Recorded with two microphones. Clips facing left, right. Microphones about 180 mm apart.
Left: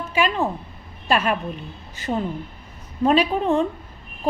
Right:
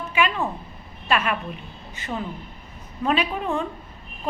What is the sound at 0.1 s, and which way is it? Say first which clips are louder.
A woman's voice: left 2 dB; 35° left (ahead or behind).